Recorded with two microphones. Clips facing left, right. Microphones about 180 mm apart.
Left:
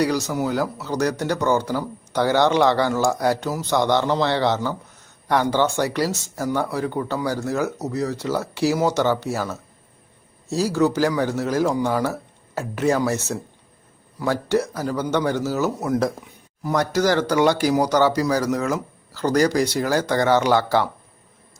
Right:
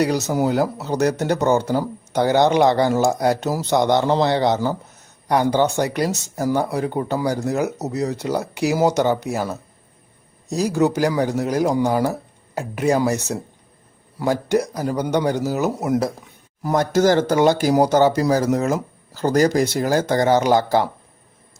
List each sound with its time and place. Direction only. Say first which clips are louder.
0.0 s speech: right 2 dB; 20° right (ahead or behind)
10.5 s speech: right 1 dB; 15° right (ahead or behind)
16.6 s speech: right 3 dB; 45° right (ahead or behind)